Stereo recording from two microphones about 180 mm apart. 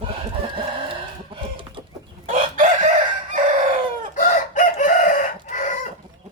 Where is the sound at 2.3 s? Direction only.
50° right (ahead or behind).